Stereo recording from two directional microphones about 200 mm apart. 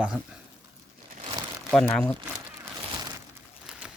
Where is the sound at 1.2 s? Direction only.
25° right (ahead or behind).